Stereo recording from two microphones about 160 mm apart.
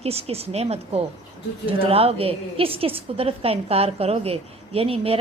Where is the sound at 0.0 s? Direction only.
40° right (ahead or behind).